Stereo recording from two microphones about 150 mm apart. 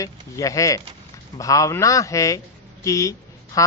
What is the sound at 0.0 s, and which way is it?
Speech, 20° left (ahead or behind).